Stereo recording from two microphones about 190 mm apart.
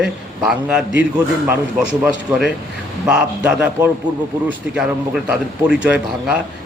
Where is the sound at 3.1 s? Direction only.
5° right (ahead or behind).